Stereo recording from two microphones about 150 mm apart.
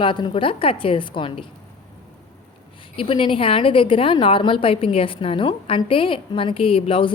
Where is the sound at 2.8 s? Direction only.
35° left (ahead or behind).